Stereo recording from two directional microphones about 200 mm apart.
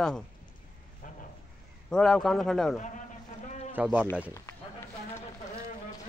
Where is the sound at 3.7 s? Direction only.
10° right (ahead or behind).